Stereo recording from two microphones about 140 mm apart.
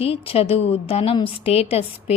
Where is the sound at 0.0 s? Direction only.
45° left (ahead or behind).